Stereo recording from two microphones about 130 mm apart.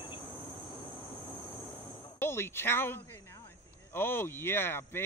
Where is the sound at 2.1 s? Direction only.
20° left (ahead or behind).